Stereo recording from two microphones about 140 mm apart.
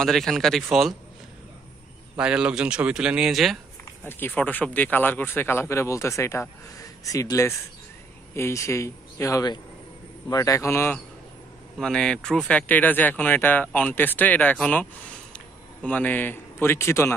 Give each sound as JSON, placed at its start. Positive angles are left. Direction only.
{"t": 0.0, "sound": "speech", "side_deg": 5}
{"t": 2.1, "sound": "speech", "side_deg": -5}
{"t": 4.0, "sound": "a man's voice", "side_deg": 15}
{"t": 11.8, "sound": "speech", "side_deg": 5}